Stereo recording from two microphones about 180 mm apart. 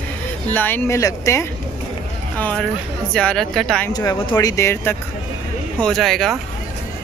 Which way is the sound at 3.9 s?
20° left (ahead or behind).